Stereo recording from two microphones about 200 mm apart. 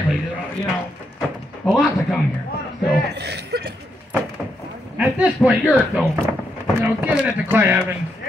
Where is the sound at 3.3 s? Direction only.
55° right (ahead or behind).